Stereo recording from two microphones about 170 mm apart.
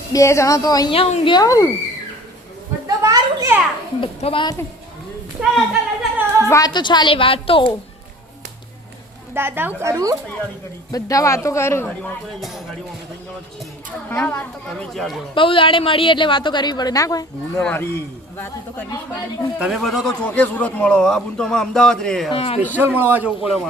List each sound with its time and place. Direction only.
0.1 s a woman's voice: 15° left (ahead or behind)
0.9 s a woman's voice: 35° left (ahead or behind); by 1.7 s 20° left (ahead or behind)
2.8 s children playing: 20° right (ahead or behind)
4.0 s a woman's voice: 30° left (ahead or behind)
5.4 s a man's voice: 5° right (ahead or behind)
6.5 s a woman's voice: 25° left (ahead or behind)
9.3 s speech: 10° right (ahead or behind)
10.9 s speech: 20° left (ahead or behind); by 12.6 s centre (ahead or behind)
14.1 s speech: 15° left (ahead or behind)
15.4 s a woman's voice: 30° left (ahead or behind); by 18.9 s 15° left (ahead or behind)
19.5 s a man's voice: 5° right (ahead or behind)
22.3 s a woman's voice: 35° left (ahead or behind)
22.9 s speech: 10° right (ahead or behind)